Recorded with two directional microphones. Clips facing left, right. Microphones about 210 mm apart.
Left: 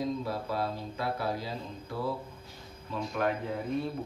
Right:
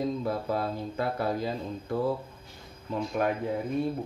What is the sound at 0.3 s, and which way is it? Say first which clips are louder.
Speech: right 3 dB; 50° right (ahead or behind).